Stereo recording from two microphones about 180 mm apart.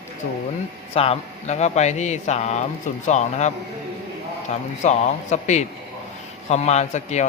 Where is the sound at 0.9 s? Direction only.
35° left (ahead or behind).